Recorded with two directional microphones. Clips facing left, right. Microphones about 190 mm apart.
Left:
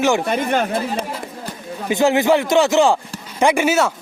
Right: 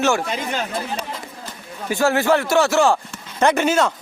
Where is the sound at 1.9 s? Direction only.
20° left (ahead or behind).